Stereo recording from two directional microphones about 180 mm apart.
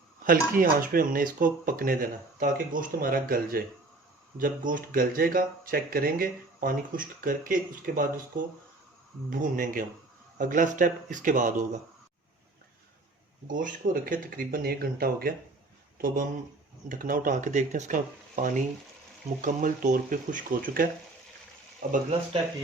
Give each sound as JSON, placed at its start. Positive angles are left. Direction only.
{"t": 0.3, "sound": "speech", "side_deg": -50}
{"t": 13.5, "sound": "speech", "side_deg": -45}